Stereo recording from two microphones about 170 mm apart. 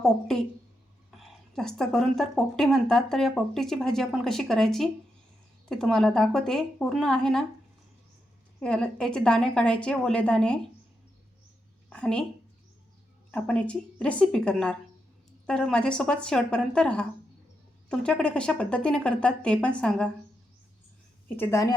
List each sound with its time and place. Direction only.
0.0 s speech: 5° left (ahead or behind)
8.6 s speech: 5° left (ahead or behind)
11.9 s a woman's voice: 5° left (ahead or behind)
13.3 s speech: 5° left (ahead or behind)
21.3 s a woman's voice: 15° left (ahead or behind)